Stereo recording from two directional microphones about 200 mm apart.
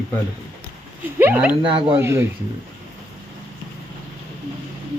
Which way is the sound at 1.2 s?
10° right (ahead or behind).